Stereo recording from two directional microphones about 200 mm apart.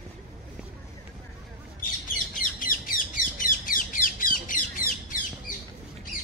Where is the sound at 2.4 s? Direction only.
45° left (ahead or behind).